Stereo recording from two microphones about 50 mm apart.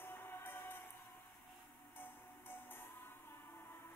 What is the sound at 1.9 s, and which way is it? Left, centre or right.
Music, left.